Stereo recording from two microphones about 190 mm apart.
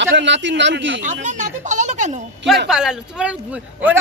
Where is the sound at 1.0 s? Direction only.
40° right (ahead or behind).